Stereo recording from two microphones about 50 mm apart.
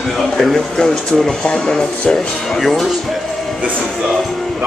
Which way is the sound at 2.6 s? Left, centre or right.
Centre.